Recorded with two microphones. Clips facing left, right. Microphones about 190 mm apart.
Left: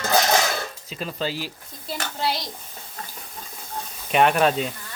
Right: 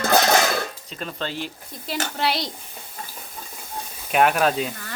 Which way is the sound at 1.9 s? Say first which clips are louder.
Right 2 dB; 75° right (ahead or behind).